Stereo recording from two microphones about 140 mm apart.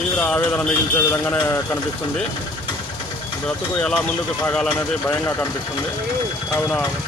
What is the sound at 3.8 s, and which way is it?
Speech, 5° left (ahead or behind).